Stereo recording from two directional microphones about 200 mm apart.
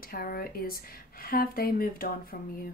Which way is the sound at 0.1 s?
50° left (ahead or behind).